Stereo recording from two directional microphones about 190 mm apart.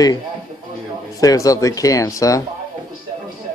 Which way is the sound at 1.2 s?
20° left (ahead or behind).